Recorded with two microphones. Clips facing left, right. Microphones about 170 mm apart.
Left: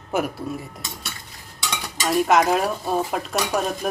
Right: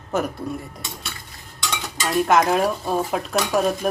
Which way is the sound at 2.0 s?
Centre (ahead or behind).